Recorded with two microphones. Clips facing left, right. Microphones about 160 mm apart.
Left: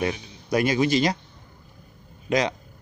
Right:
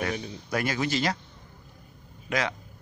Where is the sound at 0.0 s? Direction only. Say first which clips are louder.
Left 3 dB; 15° left (ahead or behind).